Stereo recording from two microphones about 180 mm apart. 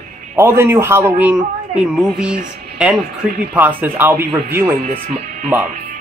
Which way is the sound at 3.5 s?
10° right (ahead or behind).